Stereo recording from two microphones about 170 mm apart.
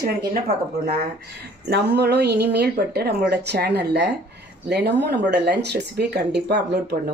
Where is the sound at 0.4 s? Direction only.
60° right (ahead or behind).